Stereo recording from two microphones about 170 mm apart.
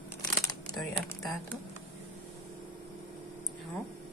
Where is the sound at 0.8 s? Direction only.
Centre (ahead or behind).